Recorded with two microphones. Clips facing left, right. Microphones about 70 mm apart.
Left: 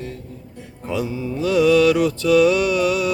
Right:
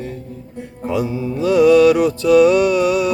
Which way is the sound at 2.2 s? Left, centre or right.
Centre.